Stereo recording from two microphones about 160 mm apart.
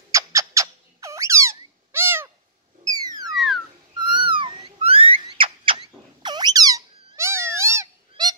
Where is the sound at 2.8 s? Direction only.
20° right (ahead or behind).